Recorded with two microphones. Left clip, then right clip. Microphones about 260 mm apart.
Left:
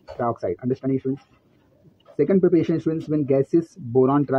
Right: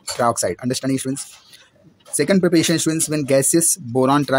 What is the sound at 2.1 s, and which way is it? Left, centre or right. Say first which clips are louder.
Speech: right 2 dB; right.